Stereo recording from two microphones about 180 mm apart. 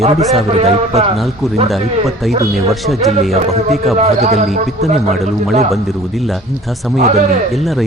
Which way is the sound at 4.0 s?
40° right (ahead or behind).